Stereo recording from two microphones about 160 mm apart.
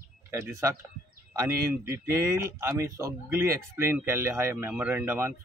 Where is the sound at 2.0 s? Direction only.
15° right (ahead or behind).